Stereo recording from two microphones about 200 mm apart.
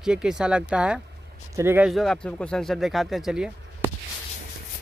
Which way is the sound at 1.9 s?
Centre (ahead or behind).